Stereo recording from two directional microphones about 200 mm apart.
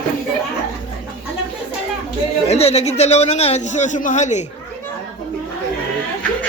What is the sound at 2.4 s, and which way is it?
A man's voice, 30° left (ahead or behind).